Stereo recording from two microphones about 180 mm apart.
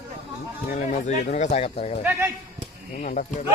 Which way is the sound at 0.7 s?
40° left (ahead or behind).